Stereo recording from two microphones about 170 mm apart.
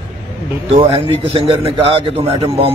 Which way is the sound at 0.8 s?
35° right (ahead or behind).